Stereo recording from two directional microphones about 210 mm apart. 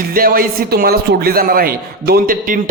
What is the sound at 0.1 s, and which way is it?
A man's voice, 45° right (ahead or behind).